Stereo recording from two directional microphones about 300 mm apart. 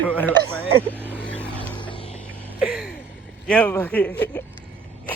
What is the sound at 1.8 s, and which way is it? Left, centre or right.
Music, centre.